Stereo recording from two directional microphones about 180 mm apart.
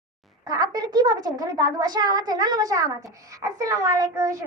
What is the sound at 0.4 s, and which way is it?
A woman's voice, 20° right (ahead or behind).